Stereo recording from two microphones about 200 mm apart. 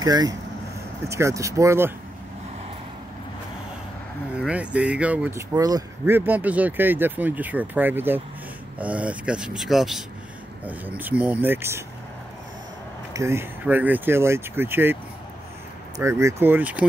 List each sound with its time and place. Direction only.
0.0 s speech: 20° right (ahead or behind)
4.4 s speech: 5° right (ahead or behind)
13.1 s speech: 15° right (ahead or behind)
16.0 s speech: 15° right (ahead or behind)